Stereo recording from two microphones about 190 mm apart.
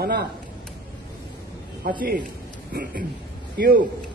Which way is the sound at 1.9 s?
50° right (ahead or behind).